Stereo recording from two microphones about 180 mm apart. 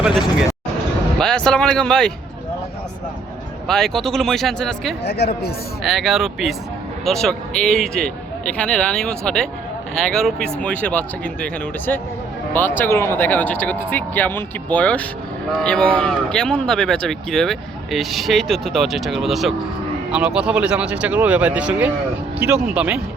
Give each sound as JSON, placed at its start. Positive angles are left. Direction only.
{"t": 0.0, "sound": "speech", "side_deg": 0}
{"t": 3.7, "sound": "speech", "side_deg": 0}
{"t": 5.0, "sound": "a woman's voice", "side_deg": 65}
{"t": 5.8, "sound": "speech", "side_deg": 0}